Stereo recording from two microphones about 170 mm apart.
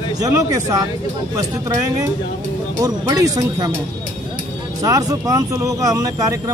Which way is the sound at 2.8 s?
20° right (ahead or behind).